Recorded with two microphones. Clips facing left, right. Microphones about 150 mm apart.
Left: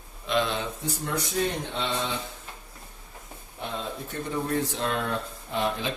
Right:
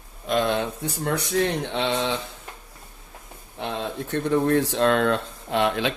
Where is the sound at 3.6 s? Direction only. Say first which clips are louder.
Right 5 dB; 80° right.